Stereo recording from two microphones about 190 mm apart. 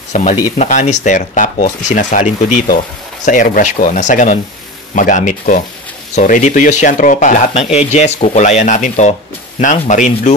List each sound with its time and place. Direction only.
0.1 s speech: 40° left (ahead or behind)